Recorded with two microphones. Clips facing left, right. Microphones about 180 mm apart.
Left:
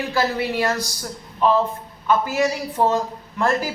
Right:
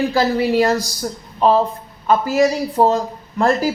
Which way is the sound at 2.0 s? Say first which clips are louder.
Right 5 dB; 40° right (ahead or behind).